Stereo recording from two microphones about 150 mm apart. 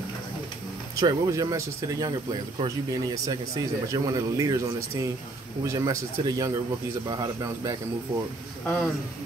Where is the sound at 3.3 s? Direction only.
25° right (ahead or behind).